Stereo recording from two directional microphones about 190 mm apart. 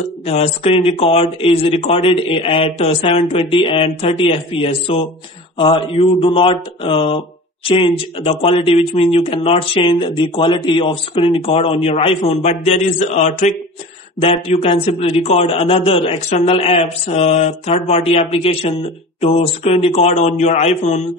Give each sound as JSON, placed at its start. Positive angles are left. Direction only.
{"t": 0.3, "sound": "a man's voice", "side_deg": 30}